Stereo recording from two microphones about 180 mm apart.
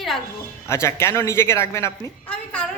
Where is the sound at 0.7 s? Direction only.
15° left (ahead or behind).